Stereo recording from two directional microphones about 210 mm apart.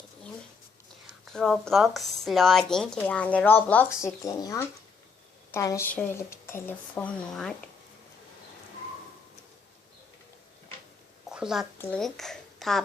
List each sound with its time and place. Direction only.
1.3 s speech: 5° left (ahead or behind)
11.3 s a sound: centre (ahead or behind)
11.8 s speech: 5° left (ahead or behind)